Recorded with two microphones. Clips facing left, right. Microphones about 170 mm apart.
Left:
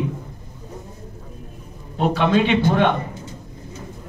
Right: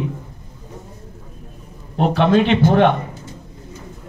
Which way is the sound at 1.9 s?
55° right (ahead or behind).